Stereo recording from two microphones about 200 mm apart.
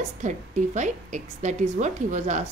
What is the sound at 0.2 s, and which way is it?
A woman's voice, 40° right (ahead or behind).